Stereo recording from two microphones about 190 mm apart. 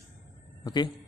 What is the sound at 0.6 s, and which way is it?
Speech, 20° left (ahead or behind).